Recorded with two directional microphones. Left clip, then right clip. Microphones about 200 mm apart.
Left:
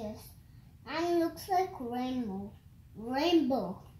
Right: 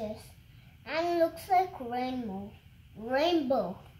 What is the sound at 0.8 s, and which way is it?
A child's voice, centre (ahead or behind).